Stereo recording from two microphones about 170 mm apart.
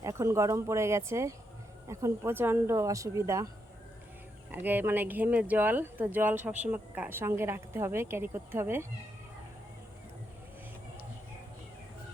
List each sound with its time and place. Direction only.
0.0 s speech: 15° right (ahead or behind)
4.5 s speech: 10° right (ahead or behind)